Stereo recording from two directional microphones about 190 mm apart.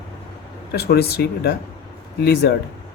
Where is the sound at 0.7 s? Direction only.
55° left (ahead or behind).